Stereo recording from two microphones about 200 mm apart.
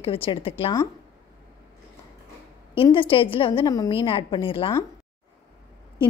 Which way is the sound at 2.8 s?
25° left (ahead or behind).